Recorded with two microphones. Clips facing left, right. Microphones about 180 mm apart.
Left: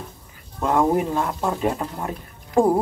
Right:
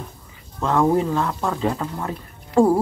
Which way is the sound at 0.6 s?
15° left (ahead or behind).